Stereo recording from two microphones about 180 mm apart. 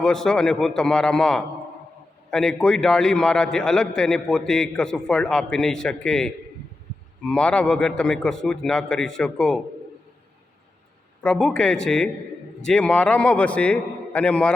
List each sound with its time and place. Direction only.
0.0 s a man's voice: 5° left (ahead or behind)
11.2 s a man's voice: 5° left (ahead or behind)